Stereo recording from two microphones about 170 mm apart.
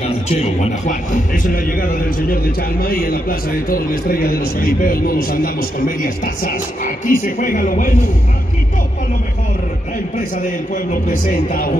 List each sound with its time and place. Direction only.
0.4 s a man's voice: 45° left (ahead or behind)
11.1 s a man's voice: 55° left (ahead or behind)